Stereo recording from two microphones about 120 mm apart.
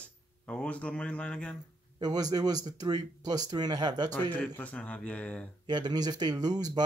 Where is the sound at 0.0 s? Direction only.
10° left (ahead or behind).